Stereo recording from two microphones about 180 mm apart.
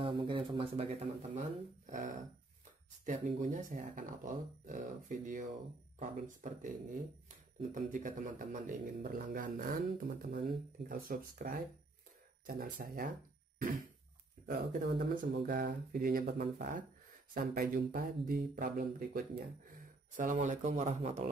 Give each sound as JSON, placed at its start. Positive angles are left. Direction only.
{"t": 0.0, "sound": "speech", "side_deg": -30}
{"t": 14.4, "sound": "speech", "side_deg": -55}
{"t": 20.2, "sound": "speech", "side_deg": -45}